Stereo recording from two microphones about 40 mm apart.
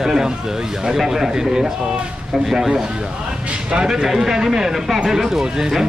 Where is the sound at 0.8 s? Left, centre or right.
Centre.